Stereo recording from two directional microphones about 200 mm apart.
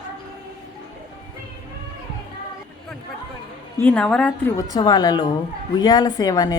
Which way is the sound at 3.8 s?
5° left (ahead or behind).